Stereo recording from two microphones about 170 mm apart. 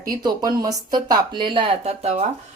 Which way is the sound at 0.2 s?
25° right (ahead or behind).